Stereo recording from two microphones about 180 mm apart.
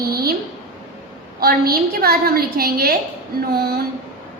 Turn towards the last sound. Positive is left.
turn(degrees=-60)  # may be behind; listen again after turning